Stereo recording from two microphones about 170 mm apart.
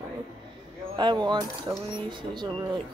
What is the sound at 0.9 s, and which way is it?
Speech, 25° right (ahead or behind).